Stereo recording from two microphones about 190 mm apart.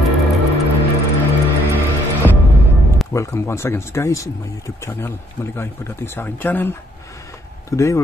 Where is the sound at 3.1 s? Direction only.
15° left (ahead or behind).